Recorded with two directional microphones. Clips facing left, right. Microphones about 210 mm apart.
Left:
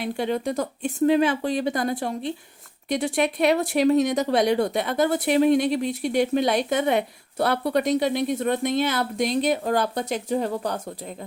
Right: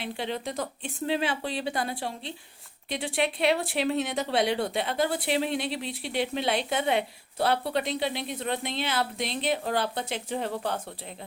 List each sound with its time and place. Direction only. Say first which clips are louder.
0.0 s speech: left 7 dB; 45° left (ahead or behind)